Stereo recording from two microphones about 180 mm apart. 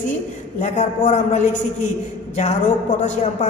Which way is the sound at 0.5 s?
45° left (ahead or behind).